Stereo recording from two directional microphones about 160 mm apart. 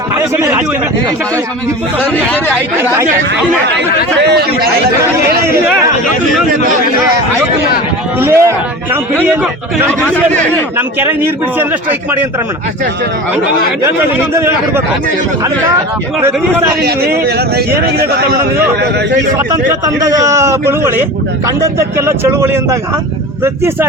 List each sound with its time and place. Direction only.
3.7 s speech: 90° right
8.2 s a man's voice: 15° right (ahead or behind)
10.8 s a man's voice: 15° right (ahead or behind)
13.8 s a man's voice: 15° right (ahead or behind)
16.8 s a man's voice: 80° right
19.8 s a man's voice: 20° right (ahead or behind)